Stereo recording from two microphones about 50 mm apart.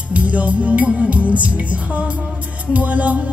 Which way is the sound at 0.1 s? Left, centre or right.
Right.